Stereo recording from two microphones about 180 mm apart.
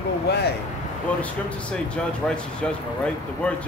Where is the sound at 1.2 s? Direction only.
5° left (ahead or behind).